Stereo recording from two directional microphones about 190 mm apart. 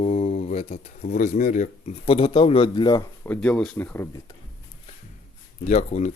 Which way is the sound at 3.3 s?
5° left (ahead or behind).